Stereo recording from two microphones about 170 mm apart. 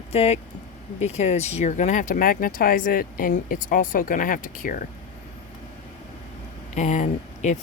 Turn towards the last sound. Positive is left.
turn(degrees=45)  # may be behind; listen again after turning